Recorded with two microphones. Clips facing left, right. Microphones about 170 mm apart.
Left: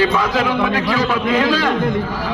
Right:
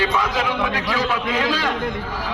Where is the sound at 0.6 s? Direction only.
60° left (ahead or behind).